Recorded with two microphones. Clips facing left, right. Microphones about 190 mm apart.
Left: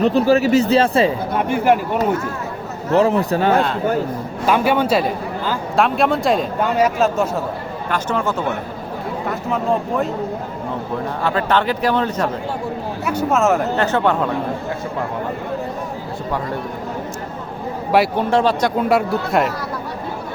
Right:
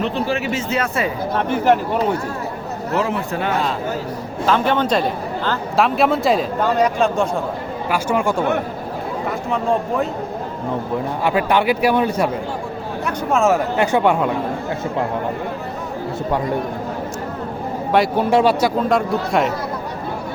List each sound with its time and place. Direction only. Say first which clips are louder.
0.0 s speech: left 7 dB; 40° left (ahead or behind)
1.4 s a man's voice: even; 10° left (ahead or behind)
2.9 s speech: left 6 dB; 35° left (ahead or behind)
4.4 s a man's voice: left 1 dB; 10° left (ahead or behind)
7.9 s speech: right 2 dB; 10° right (ahead or behind)
11.2 s speech: right 1 dB; 15° right (ahead or behind)
13.1 s speech: even; 5° left (ahead or behind)
13.7 s speech: right 1 dB; 10° right (ahead or behind)
17.9 s a man's voice: left 1 dB; 5° left (ahead or behind)
18.3 s speech: right 1 dB; 10° right (ahead or behind)
18.9 s a man's voice: left 1 dB; 5° left (ahead or behind)